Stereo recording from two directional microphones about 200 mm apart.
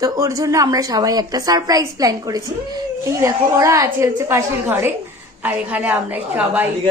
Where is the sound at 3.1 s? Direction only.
15° right (ahead or behind).